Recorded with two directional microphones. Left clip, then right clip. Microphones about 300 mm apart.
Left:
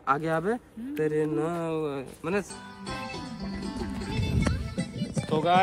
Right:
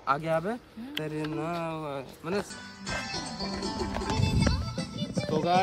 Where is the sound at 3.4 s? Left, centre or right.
Right.